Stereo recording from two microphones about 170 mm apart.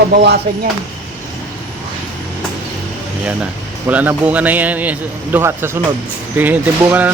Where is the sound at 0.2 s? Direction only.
85° right.